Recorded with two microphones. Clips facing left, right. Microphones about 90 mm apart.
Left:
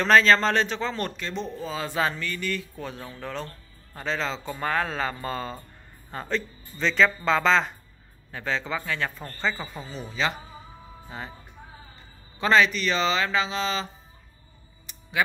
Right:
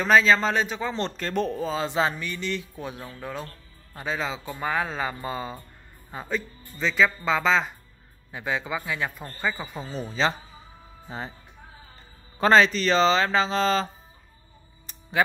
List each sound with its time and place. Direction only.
0.0 s speech: 5° right (ahead or behind)
1.1 s speech: 50° right (ahead or behind)
1.8 s speech: 20° right (ahead or behind); by 7.7 s 5° right (ahead or behind)
8.3 s speech: 15° right (ahead or behind)
9.8 s speech: 35° right (ahead or behind)
12.4 s speech: 35° right (ahead or behind)
14.9 s music: 35° right (ahead or behind)